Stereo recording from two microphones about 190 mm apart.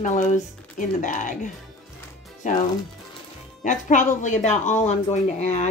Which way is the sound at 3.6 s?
40° left (ahead or behind).